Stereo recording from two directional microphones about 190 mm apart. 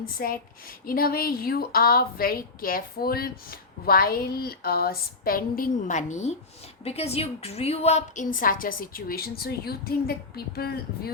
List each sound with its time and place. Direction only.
0.2 s a woman's voice: 50° left (ahead or behind)